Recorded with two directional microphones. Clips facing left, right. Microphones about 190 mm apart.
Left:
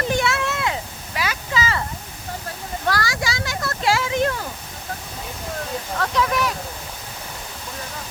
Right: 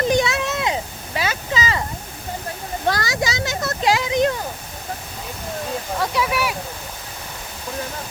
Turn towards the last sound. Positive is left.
turn(degrees=-10)  # may be behind; listen again after turning